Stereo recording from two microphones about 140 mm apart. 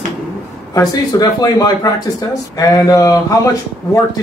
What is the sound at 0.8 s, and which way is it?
Speech, 25° left (ahead or behind).